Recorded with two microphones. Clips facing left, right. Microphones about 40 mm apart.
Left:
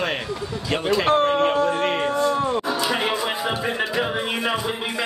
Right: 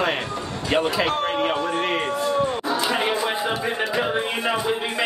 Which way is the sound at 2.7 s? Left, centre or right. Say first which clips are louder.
Even; right.